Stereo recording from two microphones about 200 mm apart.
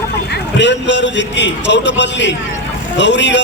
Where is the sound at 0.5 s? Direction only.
60° left (ahead or behind).